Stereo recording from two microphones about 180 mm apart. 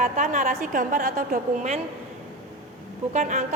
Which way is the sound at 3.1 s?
40° right (ahead or behind).